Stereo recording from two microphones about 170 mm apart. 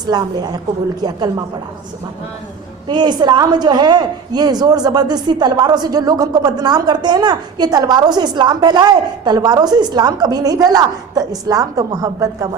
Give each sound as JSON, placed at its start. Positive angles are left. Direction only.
{"t": 0.1, "sound": "a woman's voice", "side_deg": -25}
{"t": 2.8, "sound": "a woman's voice", "side_deg": -25}